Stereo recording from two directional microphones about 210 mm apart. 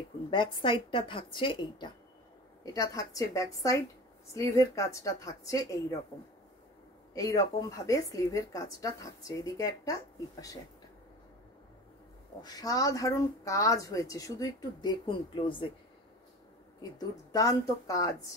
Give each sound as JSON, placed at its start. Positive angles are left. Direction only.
{"t": 0.3, "sound": "a woman's voice", "side_deg": 25}
{"t": 7.2, "sound": "speech", "side_deg": 15}
{"t": 12.4, "sound": "speech", "side_deg": 20}
{"t": 17.3, "sound": "speech", "side_deg": 15}